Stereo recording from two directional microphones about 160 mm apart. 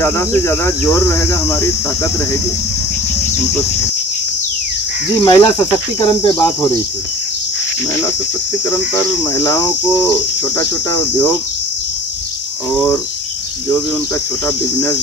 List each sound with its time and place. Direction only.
0.0 s cricket: 15° left (ahead or behind)
5.2 s cricket: 25° left (ahead or behind)
9.3 s cricket: 20° left (ahead or behind)